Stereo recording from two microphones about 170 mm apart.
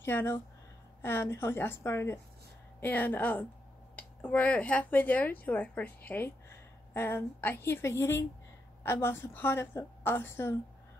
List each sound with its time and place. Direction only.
0.0 s speech: 10° left (ahead or behind)